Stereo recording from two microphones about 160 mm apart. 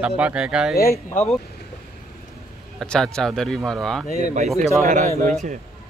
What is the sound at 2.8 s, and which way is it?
A man's voice, 5° left (ahead or behind).